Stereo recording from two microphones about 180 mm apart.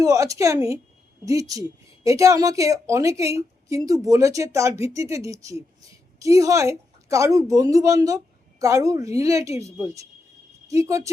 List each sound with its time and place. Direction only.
0.0 s speech: 20° right (ahead or behind)